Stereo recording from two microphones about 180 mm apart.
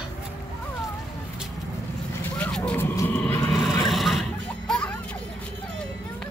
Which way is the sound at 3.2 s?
15° left (ahead or behind).